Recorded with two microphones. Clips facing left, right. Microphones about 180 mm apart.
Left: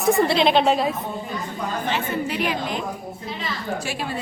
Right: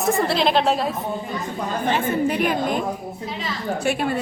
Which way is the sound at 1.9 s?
50° right (ahead or behind).